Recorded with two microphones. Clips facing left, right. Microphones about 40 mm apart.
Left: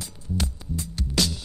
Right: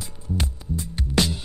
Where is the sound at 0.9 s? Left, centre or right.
Right.